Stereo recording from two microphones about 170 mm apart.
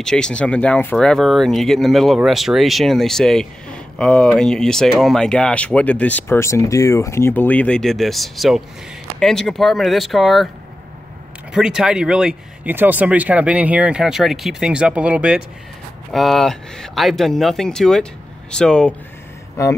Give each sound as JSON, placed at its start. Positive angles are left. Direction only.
{"t": 0.0, "sound": "speech", "side_deg": 5}
{"t": 11.5, "sound": "speech", "side_deg": -5}
{"t": 19.6, "sound": "speech", "side_deg": 20}